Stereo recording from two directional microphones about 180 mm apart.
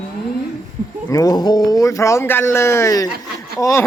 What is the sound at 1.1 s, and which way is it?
Speech, 20° left (ahead or behind).